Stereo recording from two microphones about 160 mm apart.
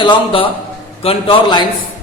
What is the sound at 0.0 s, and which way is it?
A man's voice, 30° left (ahead or behind).